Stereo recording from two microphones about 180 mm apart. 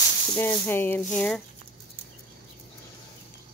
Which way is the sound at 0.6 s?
10° left (ahead or behind).